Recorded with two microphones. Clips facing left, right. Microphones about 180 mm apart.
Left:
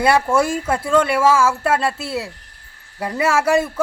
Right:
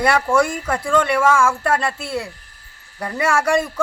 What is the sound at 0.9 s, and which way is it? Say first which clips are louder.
Speech: left 1 dB; 5° left (ahead or behind).